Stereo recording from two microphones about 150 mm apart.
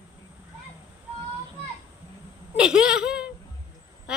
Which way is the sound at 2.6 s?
5° right (ahead or behind).